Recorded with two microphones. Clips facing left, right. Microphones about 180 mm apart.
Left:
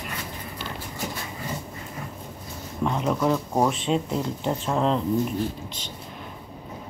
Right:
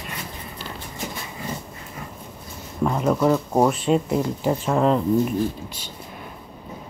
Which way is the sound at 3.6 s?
5° right (ahead or behind).